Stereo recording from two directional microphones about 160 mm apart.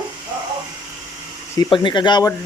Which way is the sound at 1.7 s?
30° left (ahead or behind).